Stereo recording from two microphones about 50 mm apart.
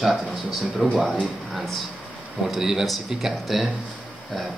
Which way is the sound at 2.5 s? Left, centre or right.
Centre.